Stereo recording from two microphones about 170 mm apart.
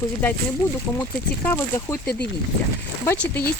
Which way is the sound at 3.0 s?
10° left (ahead or behind).